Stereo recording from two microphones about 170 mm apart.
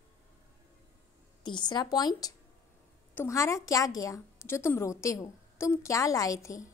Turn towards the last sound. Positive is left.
turn(degrees=20)  # may be behind; listen again after turning